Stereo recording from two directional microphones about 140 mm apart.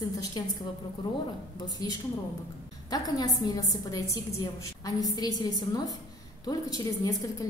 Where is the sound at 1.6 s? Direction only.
30° left (ahead or behind).